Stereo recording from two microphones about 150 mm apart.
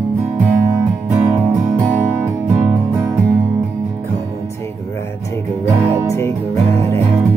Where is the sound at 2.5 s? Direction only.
15° right (ahead or behind).